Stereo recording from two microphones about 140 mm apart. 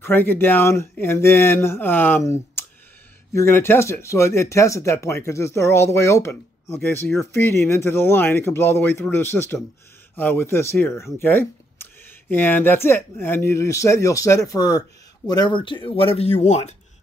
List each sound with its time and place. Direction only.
0.0 s speech: 15° left (ahead or behind)
2.6 s a sound: 15° left (ahead or behind)
3.3 s speech: 15° left (ahead or behind); by 16.7 s 55° left (ahead or behind)